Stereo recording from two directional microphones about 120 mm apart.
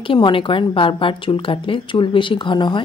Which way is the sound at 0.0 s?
45° left (ahead or behind).